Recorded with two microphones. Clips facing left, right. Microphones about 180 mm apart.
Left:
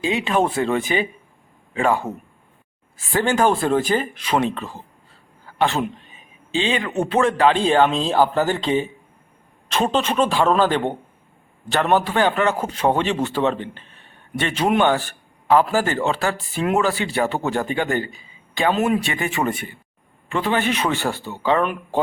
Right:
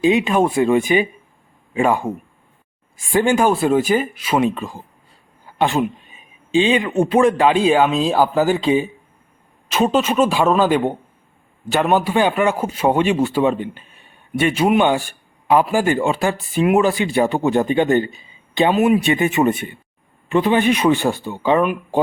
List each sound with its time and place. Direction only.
0.0 s a man's voice: 15° right (ahead or behind)
18.7 s a man's voice: 10° right (ahead or behind)